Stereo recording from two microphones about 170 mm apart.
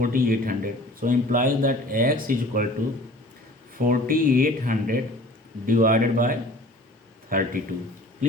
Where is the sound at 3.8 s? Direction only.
55° right (ahead or behind).